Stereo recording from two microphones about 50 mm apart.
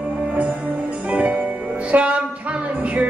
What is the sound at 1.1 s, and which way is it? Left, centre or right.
Music, right.